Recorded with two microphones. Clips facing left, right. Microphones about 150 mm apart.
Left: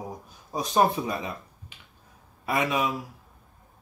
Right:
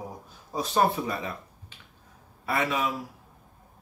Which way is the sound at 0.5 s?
15° left (ahead or behind).